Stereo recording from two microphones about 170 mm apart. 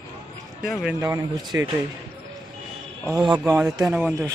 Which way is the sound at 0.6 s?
5° right (ahead or behind).